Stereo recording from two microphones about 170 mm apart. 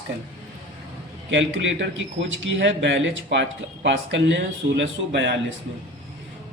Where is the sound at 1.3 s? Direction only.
90° right.